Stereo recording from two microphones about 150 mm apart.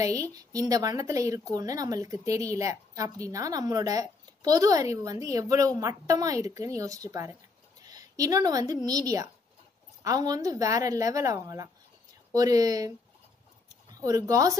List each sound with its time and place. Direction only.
0.0 s speech: 20° right (ahead or behind)
13.9 s speech: 25° right (ahead or behind)